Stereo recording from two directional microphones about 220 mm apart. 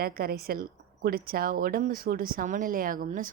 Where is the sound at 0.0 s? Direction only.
45° right (ahead or behind).